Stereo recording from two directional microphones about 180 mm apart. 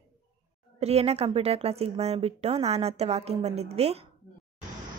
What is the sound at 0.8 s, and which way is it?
Speech, 35° right (ahead or behind).